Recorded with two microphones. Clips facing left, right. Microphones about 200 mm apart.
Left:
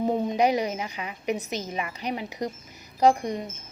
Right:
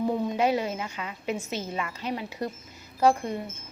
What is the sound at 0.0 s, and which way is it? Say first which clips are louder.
A woman's voice: left 2 dB; 20° left (ahead or behind).